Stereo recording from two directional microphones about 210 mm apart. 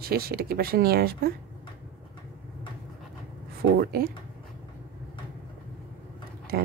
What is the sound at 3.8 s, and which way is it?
Speech, 45° right (ahead or behind).